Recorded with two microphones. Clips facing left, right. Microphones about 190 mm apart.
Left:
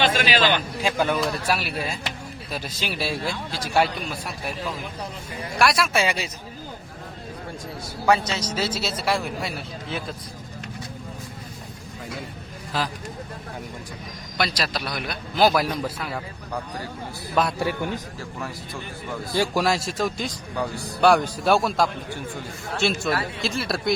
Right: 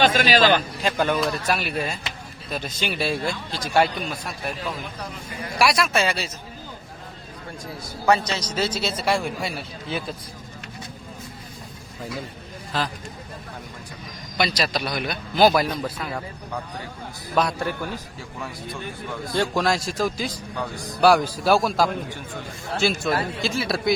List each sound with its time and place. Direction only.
0.0 s a man's voice: 45° right (ahead or behind)
0.8 s a man's voice: 5° left (ahead or behind)
5.5 s a man's voice: centre (ahead or behind)
6.0 s speech: 15° left (ahead or behind)
8.3 s a man's voice: 5° left (ahead or behind)
12.7 s speech: 10° left (ahead or behind)
14.3 s a man's voice: centre (ahead or behind)
17.4 s a man's voice: centre (ahead or behind)
19.3 s a man's voice: 5° left (ahead or behind)